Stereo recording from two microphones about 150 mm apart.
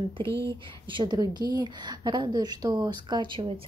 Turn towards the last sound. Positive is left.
turn(degrees=-35)  # may be behind; listen again after turning